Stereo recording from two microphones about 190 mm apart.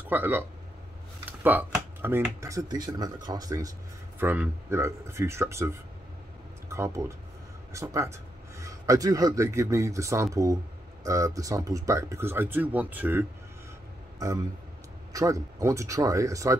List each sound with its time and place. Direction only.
0.1 s speech: 10° right (ahead or behind)
15.1 s speech: 15° right (ahead or behind)